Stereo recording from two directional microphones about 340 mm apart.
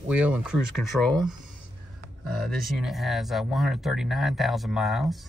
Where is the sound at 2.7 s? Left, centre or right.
Centre.